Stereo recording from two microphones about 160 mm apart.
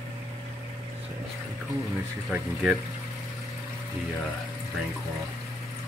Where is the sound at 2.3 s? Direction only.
10° right (ahead or behind).